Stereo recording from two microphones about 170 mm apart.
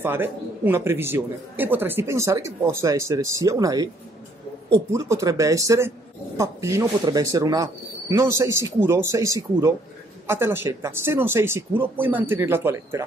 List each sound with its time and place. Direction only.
0.0 s speech: 10° right (ahead or behind)
4.9 s speech: 20° right (ahead or behind)